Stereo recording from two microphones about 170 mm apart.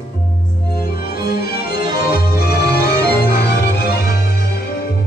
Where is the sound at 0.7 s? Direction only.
65° left (ahead or behind).